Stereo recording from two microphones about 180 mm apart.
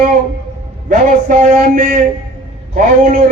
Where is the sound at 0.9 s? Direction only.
45° right (ahead or behind).